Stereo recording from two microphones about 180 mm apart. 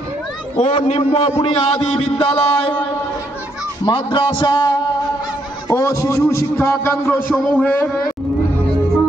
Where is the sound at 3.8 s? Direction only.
25° left (ahead or behind); by 7.8 s 5° left (ahead or behind).